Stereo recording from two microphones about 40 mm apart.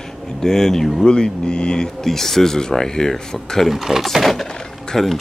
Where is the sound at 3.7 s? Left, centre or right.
Centre.